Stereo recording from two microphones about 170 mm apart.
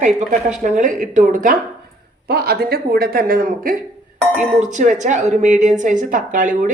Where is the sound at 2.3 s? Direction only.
70° right (ahead or behind).